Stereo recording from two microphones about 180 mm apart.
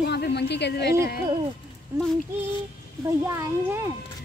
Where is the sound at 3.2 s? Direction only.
15° right (ahead or behind).